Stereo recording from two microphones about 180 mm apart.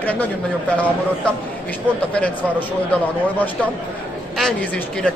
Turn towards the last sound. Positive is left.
turn(degrees=5)  # may be behind; listen again after turning